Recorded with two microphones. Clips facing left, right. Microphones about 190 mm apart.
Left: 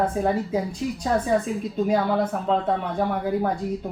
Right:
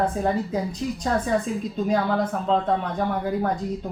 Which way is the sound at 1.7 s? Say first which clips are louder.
Left 1 dB; 10° left (ahead or behind).